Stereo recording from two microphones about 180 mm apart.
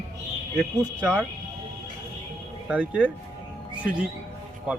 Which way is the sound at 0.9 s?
5° left (ahead or behind).